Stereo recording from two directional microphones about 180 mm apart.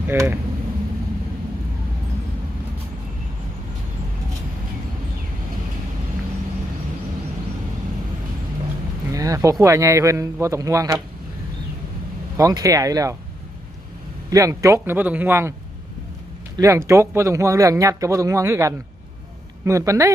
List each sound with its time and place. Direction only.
0.1 s speech: 10° right (ahead or behind)
9.1 s speech: 20° right (ahead or behind)
12.4 s speech: 20° right (ahead or behind)
14.3 s speech: 20° right (ahead or behind)
16.6 s speech: 15° right (ahead or behind)